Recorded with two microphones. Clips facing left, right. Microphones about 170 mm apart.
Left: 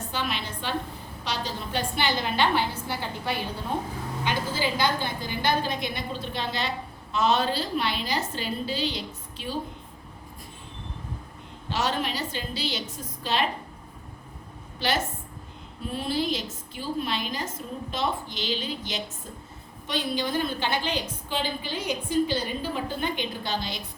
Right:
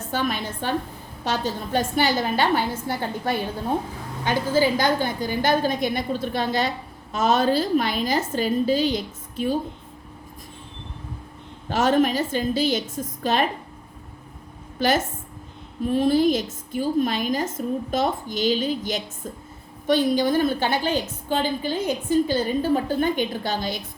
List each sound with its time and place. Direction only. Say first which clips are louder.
0.1 s a woman's voice: right 7 dB; 45° right (ahead or behind)
11.7 s a woman's voice: right 9 dB; 50° right (ahead or behind)
14.8 s a woman's voice: right 6 dB; 50° right (ahead or behind)